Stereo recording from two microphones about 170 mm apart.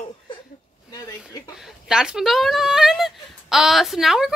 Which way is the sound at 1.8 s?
5° right (ahead or behind).